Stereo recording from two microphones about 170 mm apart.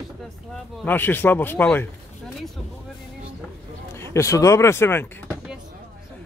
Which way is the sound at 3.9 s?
15° left (ahead or behind).